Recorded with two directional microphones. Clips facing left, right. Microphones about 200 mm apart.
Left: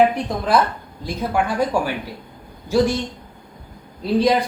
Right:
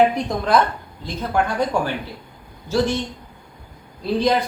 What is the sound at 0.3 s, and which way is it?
A woman's voice, 5° left (ahead or behind).